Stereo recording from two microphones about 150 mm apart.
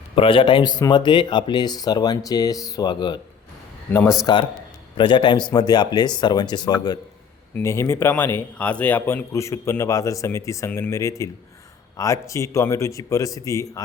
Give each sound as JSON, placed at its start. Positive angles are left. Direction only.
{"t": 0.2, "sound": "speech", "side_deg": 35}
{"t": 3.9, "sound": "speech", "side_deg": 15}
{"t": 4.9, "sound": "speech", "side_deg": 30}